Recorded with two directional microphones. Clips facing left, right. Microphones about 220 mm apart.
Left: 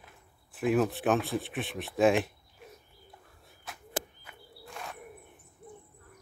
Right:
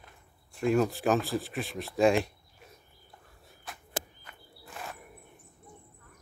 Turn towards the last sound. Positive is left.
turn(degrees=0)  # may be behind; listen again after turning